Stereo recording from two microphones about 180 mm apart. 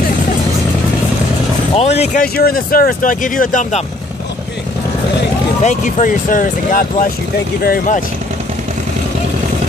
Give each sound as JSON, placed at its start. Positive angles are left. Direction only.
{"t": 1.8, "sound": "speech", "side_deg": 35}
{"t": 2.2, "sound": "speech", "side_deg": 55}
{"t": 5.6, "sound": "speech", "side_deg": 40}